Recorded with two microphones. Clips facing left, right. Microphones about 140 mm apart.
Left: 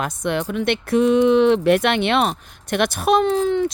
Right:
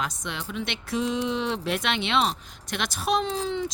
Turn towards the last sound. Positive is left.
turn(degrees=55)  # may be behind; listen again after turning